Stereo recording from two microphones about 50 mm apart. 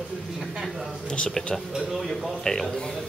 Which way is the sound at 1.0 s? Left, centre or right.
Centre.